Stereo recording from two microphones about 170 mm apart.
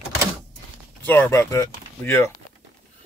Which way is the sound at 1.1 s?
15° left (ahead or behind).